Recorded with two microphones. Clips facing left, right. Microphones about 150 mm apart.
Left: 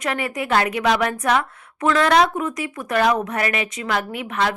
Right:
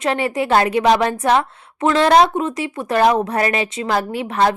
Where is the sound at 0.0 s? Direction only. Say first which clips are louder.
Right 5 dB; 30° right (ahead or behind).